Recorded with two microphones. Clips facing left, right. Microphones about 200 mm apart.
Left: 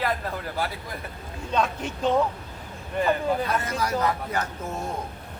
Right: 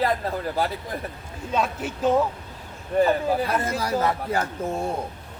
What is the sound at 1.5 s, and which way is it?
Speech, 5° right (ahead or behind).